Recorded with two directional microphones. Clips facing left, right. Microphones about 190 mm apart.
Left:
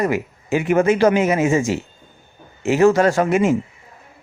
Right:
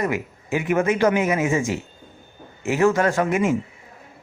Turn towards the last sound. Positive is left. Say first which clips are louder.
# left 4 dB
turn(degrees=30)  # may be behind; listen again after turning